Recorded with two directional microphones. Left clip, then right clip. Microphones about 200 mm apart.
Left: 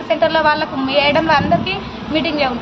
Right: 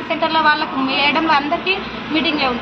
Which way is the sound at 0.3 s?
30° left (ahead or behind).